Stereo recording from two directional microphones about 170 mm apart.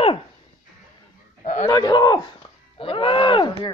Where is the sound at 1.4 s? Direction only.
45° left (ahead or behind).